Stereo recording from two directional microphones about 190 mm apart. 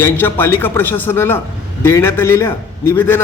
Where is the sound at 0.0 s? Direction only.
10° left (ahead or behind).